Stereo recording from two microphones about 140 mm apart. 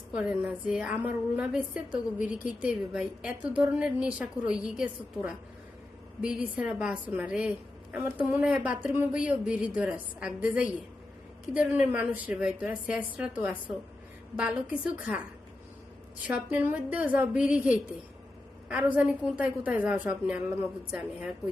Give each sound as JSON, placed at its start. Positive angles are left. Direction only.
{"t": 0.1, "sound": "a woman's voice", "side_deg": -5}
{"t": 16.2, "sound": "a woman's voice", "side_deg": -10}